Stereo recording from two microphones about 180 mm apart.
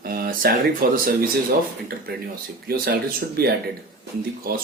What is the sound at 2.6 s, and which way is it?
Speech, 60° right (ahead or behind).